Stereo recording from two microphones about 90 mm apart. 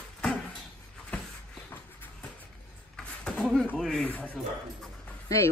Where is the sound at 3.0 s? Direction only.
5° left (ahead or behind).